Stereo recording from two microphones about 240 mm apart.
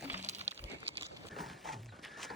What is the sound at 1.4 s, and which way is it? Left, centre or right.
Horse, centre.